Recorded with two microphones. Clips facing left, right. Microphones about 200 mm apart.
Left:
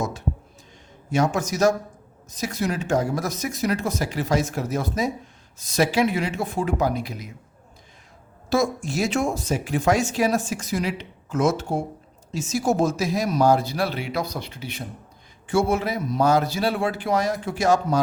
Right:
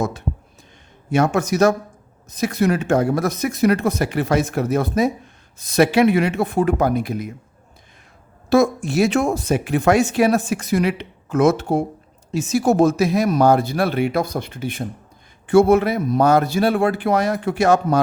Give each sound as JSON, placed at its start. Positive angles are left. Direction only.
{"t": 1.1, "sound": "speech", "side_deg": -60}
{"t": 8.4, "sound": "speech", "side_deg": -60}